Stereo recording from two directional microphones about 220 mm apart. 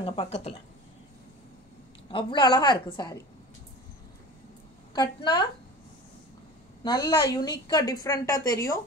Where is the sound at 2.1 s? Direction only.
20° left (ahead or behind).